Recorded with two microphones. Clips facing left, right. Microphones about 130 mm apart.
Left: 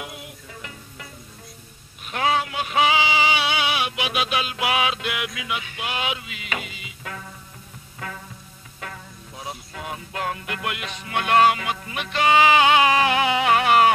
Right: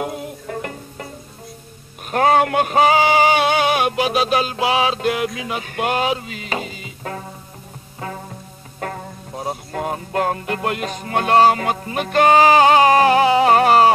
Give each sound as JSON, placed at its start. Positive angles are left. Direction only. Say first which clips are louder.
{"t": 0.0, "sound": "music", "louder": "right 11 dB", "side_deg": -40}
{"t": 2.0, "sound": "a sound", "louder": "right 8 dB", "side_deg": -45}
{"t": 8.3, "sound": "music", "louder": "right 7 dB", "side_deg": -45}